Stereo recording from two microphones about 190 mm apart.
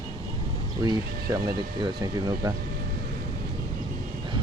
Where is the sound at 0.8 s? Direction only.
20° right (ahead or behind).